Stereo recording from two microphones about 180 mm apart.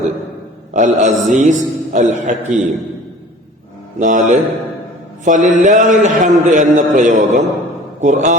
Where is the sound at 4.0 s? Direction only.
45° right (ahead or behind).